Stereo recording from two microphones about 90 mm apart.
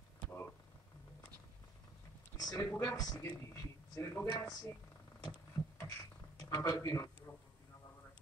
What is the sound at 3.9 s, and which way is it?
Speech, 30° left (ahead or behind).